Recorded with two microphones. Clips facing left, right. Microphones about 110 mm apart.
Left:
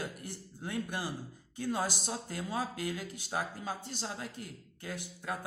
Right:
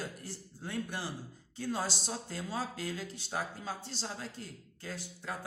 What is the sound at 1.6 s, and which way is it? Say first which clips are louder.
Speech: left 2 dB; 15° left (ahead or behind).